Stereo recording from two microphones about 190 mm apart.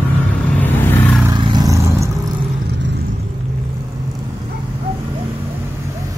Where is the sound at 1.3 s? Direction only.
25° right (ahead or behind).